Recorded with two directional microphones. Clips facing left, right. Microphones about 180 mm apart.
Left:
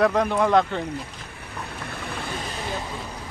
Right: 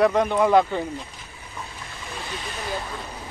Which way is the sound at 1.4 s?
65° left (ahead or behind).